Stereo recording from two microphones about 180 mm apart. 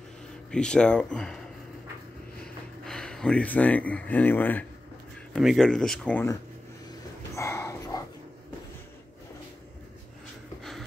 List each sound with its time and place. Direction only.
0.5 s speech: 5° left (ahead or behind)
2.4 s speech: 5° left (ahead or behind)
5.3 s speech: centre (ahead or behind)
7.3 s dog: 15° left (ahead or behind)